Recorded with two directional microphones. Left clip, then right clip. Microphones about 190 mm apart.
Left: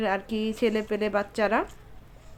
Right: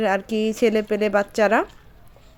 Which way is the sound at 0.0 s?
30° right (ahead or behind).